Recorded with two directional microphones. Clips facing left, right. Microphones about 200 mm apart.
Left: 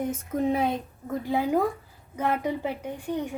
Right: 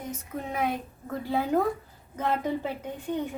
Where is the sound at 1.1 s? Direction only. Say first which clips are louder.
Left 1 dB; 15° left (ahead or behind).